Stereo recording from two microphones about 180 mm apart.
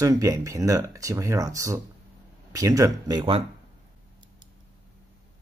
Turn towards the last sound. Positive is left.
turn(degrees=-25)  # may be behind; listen again after turning